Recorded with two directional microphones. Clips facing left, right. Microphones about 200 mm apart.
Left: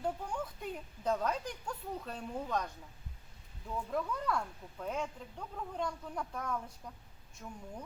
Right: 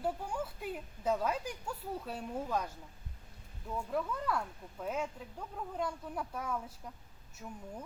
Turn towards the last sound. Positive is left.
turn(degrees=-5)  # may be behind; listen again after turning